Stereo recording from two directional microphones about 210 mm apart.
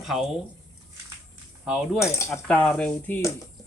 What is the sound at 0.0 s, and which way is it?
Speech, centre (ahead or behind).